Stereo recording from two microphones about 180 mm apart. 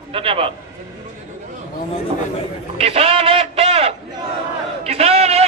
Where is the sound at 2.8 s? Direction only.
35° right (ahead or behind).